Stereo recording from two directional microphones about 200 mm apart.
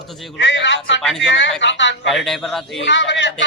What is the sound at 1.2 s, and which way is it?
Speech, 65° left (ahead or behind).